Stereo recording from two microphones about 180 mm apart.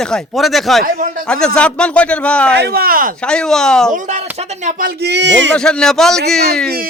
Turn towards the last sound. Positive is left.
turn(degrees=0)  # may be behind; listen again after turning